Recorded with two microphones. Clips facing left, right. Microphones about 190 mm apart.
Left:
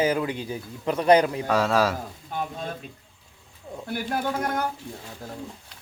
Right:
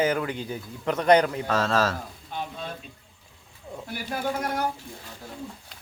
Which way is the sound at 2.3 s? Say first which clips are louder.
Left 3 dB; 50° left (ahead or behind).